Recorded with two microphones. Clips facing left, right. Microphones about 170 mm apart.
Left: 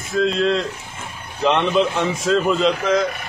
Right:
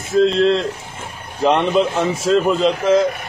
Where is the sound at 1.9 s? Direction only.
35° right (ahead or behind).